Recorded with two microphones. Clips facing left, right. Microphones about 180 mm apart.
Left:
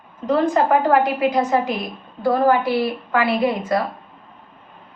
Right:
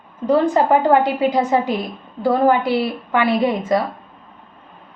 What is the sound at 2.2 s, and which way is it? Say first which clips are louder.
A woman's voice: right 1 dB; 20° right (ahead or behind).